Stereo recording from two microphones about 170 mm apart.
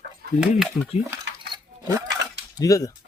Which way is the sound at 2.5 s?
20° left (ahead or behind).